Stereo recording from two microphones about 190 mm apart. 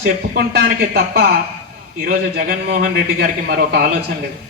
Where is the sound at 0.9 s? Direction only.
55° right (ahead or behind).